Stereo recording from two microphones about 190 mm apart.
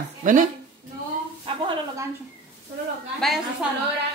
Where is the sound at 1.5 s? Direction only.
30° right (ahead or behind).